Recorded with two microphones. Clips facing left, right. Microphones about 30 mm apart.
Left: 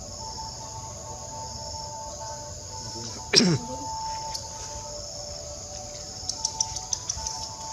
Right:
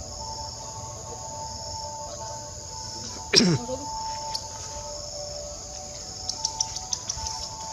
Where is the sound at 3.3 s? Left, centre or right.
Centre.